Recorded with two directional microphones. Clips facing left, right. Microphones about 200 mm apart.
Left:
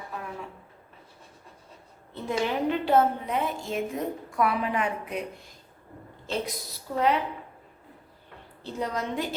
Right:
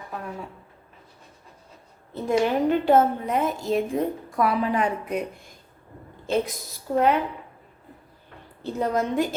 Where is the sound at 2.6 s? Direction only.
45° right (ahead or behind).